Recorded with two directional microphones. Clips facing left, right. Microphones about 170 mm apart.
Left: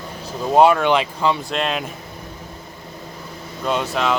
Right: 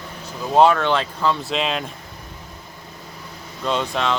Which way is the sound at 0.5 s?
10° left (ahead or behind).